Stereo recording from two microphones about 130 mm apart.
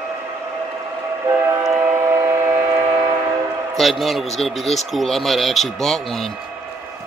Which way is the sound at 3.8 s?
Centre (ahead or behind).